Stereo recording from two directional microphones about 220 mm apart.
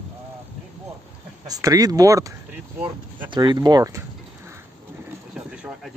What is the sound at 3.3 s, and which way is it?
Speech, 20° right (ahead or behind).